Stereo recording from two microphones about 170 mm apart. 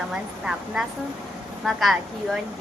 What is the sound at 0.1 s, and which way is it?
Speech, 5° right (ahead or behind).